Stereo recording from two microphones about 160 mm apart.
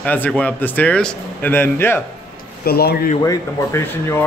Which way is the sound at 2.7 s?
80° left.